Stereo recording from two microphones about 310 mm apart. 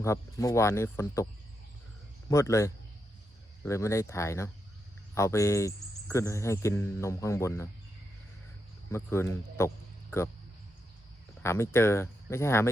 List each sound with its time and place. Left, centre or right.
0.0 s speech: centre
2.3 s speech: centre
8.9 s speech: centre
11.4 s speech: centre